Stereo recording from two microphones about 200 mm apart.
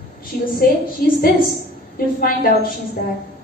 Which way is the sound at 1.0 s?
45° left (ahead or behind).